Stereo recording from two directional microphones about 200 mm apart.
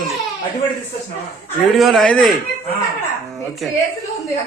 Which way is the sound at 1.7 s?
Centre (ahead or behind).